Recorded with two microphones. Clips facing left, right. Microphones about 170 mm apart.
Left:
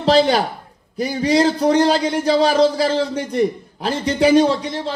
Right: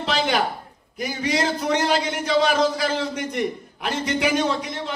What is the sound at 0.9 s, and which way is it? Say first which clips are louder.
A man's voice: left 8 dB; 35° left (ahead or behind).